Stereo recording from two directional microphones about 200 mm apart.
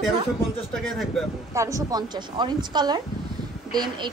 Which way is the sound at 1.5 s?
15° right (ahead or behind).